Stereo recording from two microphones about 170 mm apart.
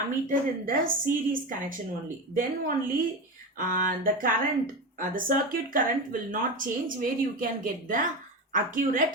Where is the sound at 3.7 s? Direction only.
55° right (ahead or behind).